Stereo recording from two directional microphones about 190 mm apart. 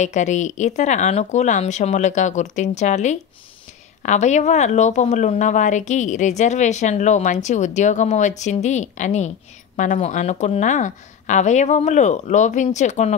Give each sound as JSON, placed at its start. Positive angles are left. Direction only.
{"t": 0.0, "sound": "speech", "side_deg": 40}